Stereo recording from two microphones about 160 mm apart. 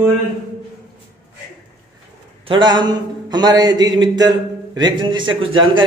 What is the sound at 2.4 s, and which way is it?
A man's voice, 30° right (ahead or behind).